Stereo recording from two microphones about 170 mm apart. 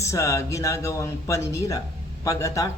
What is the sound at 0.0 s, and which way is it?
Speech, 15° left (ahead or behind).